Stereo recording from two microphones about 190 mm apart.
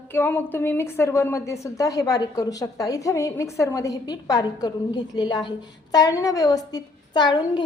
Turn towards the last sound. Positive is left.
turn(degrees=25)  # may be behind; listen again after turning